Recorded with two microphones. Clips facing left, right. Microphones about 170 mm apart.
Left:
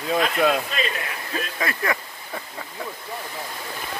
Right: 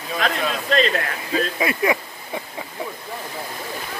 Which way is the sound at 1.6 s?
15° right (ahead or behind).